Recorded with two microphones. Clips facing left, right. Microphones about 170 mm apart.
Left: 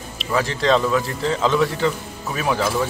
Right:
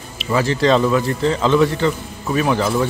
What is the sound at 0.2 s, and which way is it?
A man's voice, centre (ahead or behind).